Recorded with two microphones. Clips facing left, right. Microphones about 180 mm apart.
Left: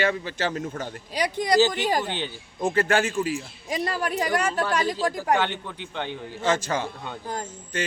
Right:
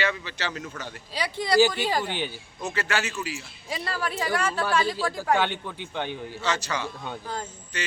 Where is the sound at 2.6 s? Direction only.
50° left (ahead or behind).